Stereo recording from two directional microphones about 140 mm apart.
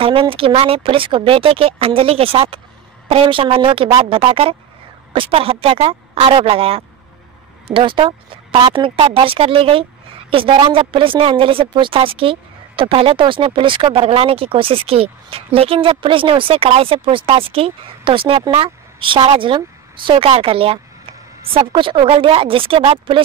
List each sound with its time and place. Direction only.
0.0 s speech: 40° right (ahead or behind)